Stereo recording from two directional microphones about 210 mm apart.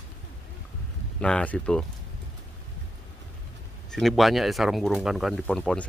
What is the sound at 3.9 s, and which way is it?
Speech, centre (ahead or behind).